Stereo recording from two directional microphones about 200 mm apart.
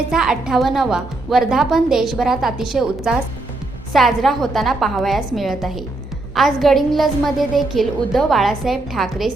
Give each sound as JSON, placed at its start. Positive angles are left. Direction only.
{"t": 0.1, "sound": "a woman's voice", "side_deg": -5}